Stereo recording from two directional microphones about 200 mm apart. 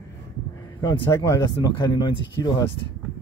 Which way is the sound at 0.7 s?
20° left (ahead or behind).